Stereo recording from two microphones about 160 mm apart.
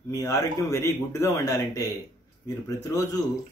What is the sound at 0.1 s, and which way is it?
Speech, 20° left (ahead or behind).